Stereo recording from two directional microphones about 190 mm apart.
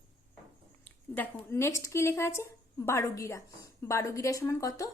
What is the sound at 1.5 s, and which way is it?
A woman's voice, 15° left (ahead or behind).